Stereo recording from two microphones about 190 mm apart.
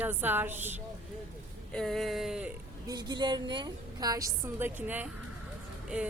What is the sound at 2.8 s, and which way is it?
A woman's voice, 20° right (ahead or behind).